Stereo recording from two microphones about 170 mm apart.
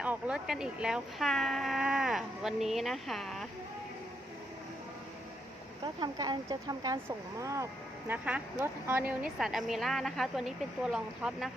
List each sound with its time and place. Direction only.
0.0 s speech: 5° right (ahead or behind)
5.8 s speech: 25° right (ahead or behind)
9.4 s speech: centre (ahead or behind)